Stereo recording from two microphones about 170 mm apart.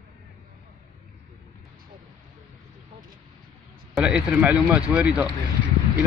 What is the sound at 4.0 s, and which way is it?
Speech, 5° right (ahead or behind).